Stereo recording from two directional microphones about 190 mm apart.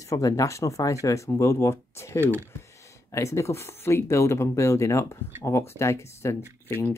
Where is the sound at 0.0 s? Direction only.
15° left (ahead or behind).